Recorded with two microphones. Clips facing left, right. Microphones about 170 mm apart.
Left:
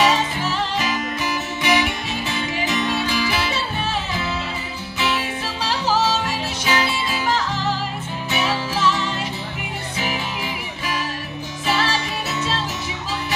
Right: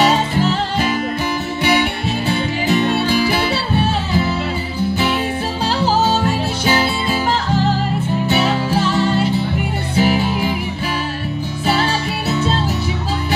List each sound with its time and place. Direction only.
0.0 s music: 35° right (ahead or behind)
6.6 s music: 35° right (ahead or behind)
8.3 s music: 35° right (ahead or behind)
11.6 s music: 35° right (ahead or behind)